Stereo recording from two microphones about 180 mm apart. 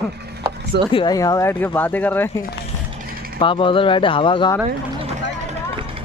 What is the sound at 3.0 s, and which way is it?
Mechanisms, 55° right (ahead or behind).